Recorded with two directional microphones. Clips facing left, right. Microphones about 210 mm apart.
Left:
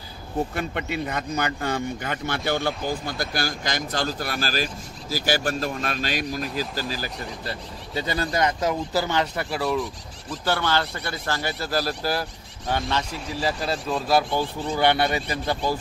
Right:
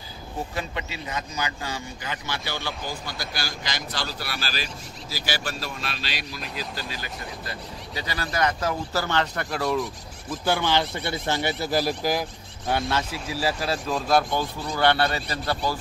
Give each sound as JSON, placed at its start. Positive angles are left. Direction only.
{"t": 0.6, "sound": "speech", "side_deg": 55}
{"t": 8.2, "sound": "speech", "side_deg": 20}
{"t": 10.3, "sound": "speech", "side_deg": -10}
{"t": 14.8, "sound": "speech", "side_deg": 15}